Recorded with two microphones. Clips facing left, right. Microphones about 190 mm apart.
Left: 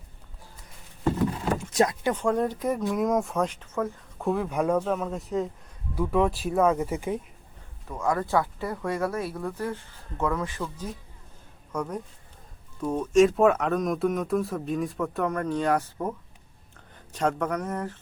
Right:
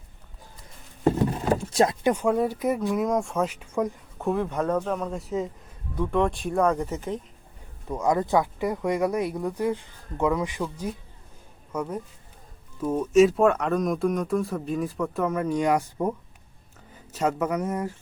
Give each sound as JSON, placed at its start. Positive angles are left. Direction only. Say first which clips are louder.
{"t": 1.0, "sound": "a sound", "louder": "right 3 dB", "side_deg": -35}
{"t": 2.1, "sound": "speech", "louder": "right 2 dB", "side_deg": -5}
{"t": 4.2, "sound": "speech", "louder": "even", "side_deg": 0}
{"t": 7.9, "sound": "speech", "louder": "right 3 dB", "side_deg": -20}